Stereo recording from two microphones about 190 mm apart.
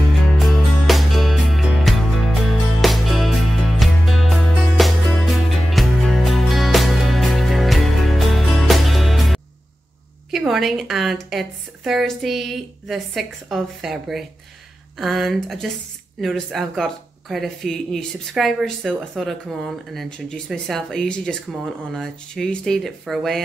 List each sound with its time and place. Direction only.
0.4 s music: centre (ahead or behind)
10.3 s a woman's voice: centre (ahead or behind)